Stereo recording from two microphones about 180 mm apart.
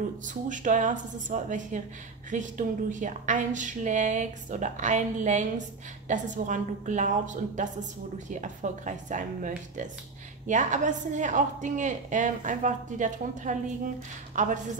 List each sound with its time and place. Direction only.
0.3 s a woman's voice: 45° right (ahead or behind)